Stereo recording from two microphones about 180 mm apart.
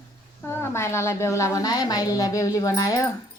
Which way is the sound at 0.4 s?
15° left (ahead or behind).